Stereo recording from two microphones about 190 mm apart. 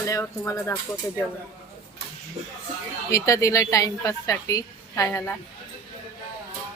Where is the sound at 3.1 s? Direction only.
15° left (ahead or behind).